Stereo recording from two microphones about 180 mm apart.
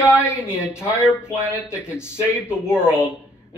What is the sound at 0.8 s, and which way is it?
Speech, 5° right (ahead or behind).